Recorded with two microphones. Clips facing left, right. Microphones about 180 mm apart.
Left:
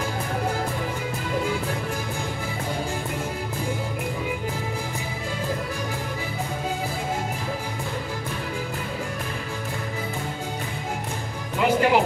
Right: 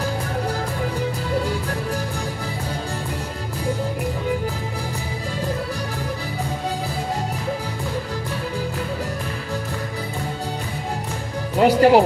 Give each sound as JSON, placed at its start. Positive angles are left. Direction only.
{"t": 11.5, "sound": "music", "side_deg": -40}